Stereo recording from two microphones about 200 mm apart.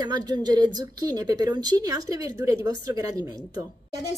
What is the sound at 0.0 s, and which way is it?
A woman's voice, 20° right (ahead or behind).